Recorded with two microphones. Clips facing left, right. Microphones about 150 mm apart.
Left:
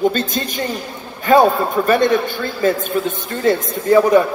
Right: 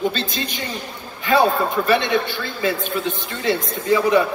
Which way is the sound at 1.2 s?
45° left (ahead or behind).